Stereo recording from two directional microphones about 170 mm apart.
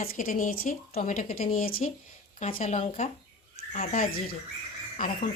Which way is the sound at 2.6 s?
40° left (ahead or behind).